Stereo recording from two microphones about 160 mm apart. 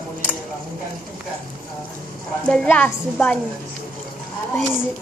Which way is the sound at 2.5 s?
5° left (ahead or behind).